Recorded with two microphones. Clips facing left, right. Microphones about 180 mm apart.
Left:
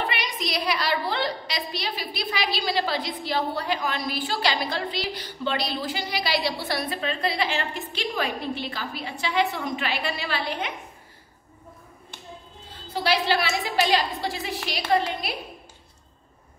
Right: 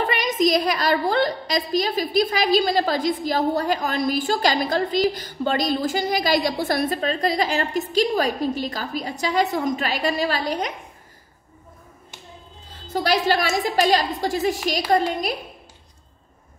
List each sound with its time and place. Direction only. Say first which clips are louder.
0.0 s a woman's voice: right 9 dB; 45° right (ahead or behind)
12.9 s a woman's voice: right 3 dB; 45° right (ahead or behind)